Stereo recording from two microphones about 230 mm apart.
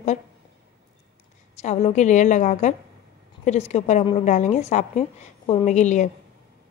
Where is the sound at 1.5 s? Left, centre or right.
Left.